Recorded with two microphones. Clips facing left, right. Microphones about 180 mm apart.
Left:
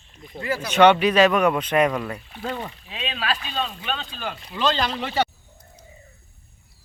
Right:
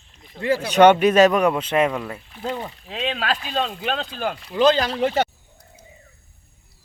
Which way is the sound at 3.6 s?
90° right.